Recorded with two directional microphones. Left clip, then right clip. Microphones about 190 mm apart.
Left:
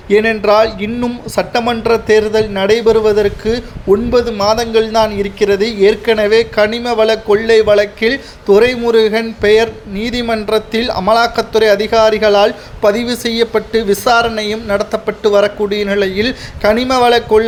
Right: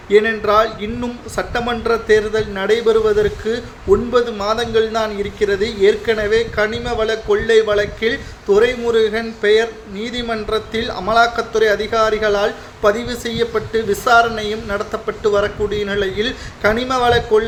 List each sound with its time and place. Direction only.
0.1 s a man's voice: 35° left (ahead or behind)